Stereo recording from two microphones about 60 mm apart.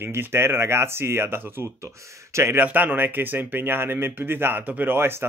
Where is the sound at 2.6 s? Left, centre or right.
Right.